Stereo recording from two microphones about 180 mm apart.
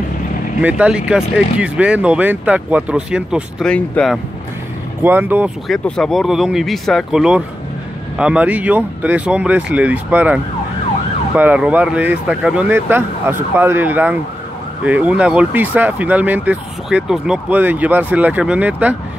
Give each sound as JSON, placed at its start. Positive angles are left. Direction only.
{"t": 0.6, "sound": "speech", "side_deg": -5}
{"t": 5.0, "sound": "speech", "side_deg": -10}
{"t": 5.7, "sound": "speech", "side_deg": 5}